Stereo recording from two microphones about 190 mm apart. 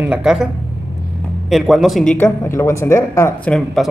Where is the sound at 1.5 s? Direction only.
Centre (ahead or behind).